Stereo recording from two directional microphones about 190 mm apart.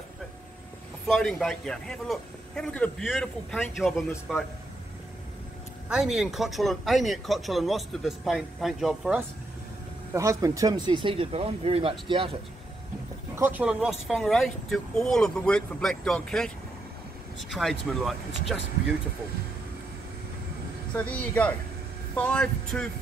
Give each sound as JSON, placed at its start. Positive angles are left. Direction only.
{"t": 1.0, "sound": "speech", "side_deg": 0}
{"t": 5.9, "sound": "speech", "side_deg": -5}
{"t": 10.1, "sound": "speech", "side_deg": -15}
{"t": 13.4, "sound": "speech", "side_deg": -10}
{"t": 20.9, "sound": "speech", "side_deg": 5}